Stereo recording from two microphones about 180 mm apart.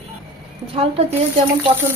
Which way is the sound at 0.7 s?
35° right (ahead or behind).